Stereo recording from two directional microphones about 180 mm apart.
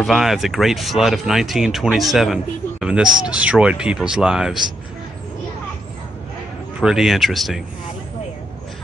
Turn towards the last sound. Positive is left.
turn(degrees=0)  # may be behind; listen again after turning